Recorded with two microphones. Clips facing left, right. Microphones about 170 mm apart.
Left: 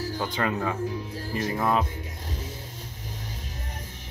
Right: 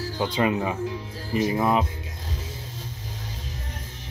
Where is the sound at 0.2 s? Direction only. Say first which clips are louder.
Right 6 dB; 15° right (ahead or behind).